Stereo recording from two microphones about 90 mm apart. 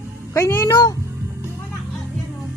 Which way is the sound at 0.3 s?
30° left (ahead or behind).